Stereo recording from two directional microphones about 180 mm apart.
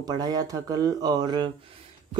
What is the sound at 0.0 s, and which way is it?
Speech, 20° right (ahead or behind).